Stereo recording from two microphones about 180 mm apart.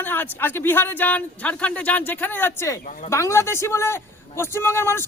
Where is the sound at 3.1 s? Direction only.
15° left (ahead or behind).